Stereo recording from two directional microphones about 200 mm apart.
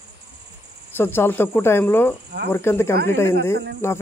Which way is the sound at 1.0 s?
10° left (ahead or behind).